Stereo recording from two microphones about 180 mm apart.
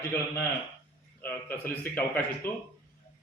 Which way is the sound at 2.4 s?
55° left (ahead or behind).